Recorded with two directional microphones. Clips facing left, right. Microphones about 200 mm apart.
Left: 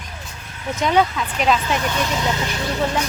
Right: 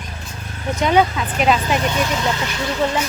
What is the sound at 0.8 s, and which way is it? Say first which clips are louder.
Speech: right 2 dB; centre (ahead or behind).